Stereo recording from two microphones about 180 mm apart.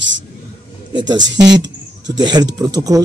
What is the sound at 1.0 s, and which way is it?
Speech, 90° right.